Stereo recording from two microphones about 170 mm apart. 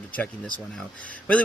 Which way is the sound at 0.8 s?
10° left (ahead or behind).